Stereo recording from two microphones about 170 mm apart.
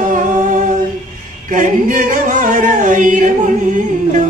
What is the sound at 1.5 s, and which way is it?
Music, 50° right (ahead or behind).